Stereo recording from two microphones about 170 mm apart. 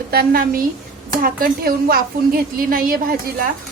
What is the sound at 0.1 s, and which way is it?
A woman's voice, 60° right (ahead or behind).